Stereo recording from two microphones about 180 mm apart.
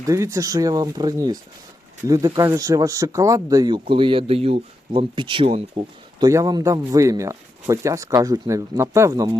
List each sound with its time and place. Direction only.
0.0 s speech: 15° right (ahead or behind)